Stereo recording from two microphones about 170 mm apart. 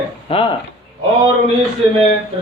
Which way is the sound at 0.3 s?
30° left (ahead or behind).